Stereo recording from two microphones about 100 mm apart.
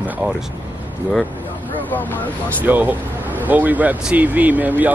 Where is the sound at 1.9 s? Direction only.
15° left (ahead or behind).